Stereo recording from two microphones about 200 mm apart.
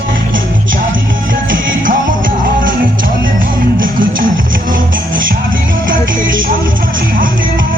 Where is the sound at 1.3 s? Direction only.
45° right (ahead or behind).